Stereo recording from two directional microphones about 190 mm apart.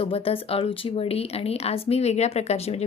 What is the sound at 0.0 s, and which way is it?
Speech, 30° left (ahead or behind).